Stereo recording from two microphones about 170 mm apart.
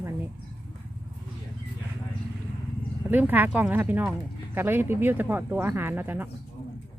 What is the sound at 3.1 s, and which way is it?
Speech, 10° right (ahead or behind).